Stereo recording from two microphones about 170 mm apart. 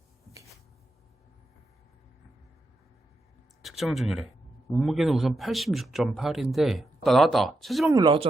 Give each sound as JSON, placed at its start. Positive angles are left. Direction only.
{"t": 3.6, "sound": "speech", "side_deg": 0}
{"t": 7.9, "sound": "speech", "side_deg": -30}